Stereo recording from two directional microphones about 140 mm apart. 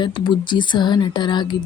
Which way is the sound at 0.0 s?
35° left (ahead or behind).